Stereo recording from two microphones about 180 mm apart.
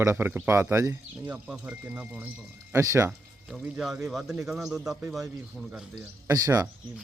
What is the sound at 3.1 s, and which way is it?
Speech, 5° right (ahead or behind).